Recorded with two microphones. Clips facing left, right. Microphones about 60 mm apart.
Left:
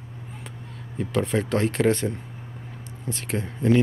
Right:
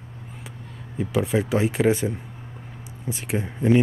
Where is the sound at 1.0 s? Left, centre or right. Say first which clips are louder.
Right 1 dB; centre.